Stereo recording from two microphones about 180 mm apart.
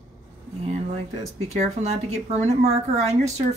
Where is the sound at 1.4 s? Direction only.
35° right (ahead or behind).